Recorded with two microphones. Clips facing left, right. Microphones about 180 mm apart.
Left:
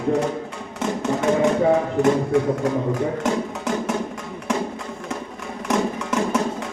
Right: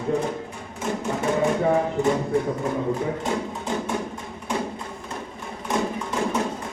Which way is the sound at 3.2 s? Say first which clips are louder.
Left 4 dB; 90° left.